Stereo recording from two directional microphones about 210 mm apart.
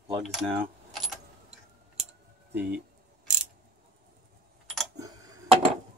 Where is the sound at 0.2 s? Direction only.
Centre (ahead or behind).